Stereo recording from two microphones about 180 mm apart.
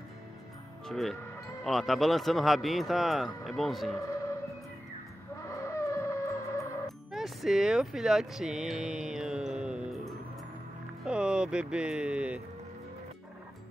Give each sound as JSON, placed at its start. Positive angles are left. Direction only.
{"t": 0.8, "sound": "a man's voice", "side_deg": 0}
{"t": 5.4, "sound": "music", "side_deg": 15}
{"t": 7.1, "sound": "a man's voice", "side_deg": 0}